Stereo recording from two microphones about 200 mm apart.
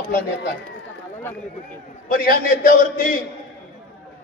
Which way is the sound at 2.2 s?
45° left (ahead or behind).